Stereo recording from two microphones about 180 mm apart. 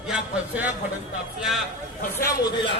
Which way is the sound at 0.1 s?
10° right (ahead or behind).